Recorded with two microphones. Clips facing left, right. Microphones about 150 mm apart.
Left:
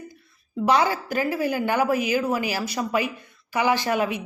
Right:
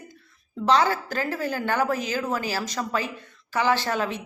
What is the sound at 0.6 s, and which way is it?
Speech, 10° left (ahead or behind).